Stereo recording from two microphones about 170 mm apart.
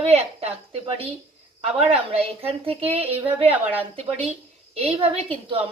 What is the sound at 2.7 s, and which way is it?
Speech, 35° right (ahead or behind).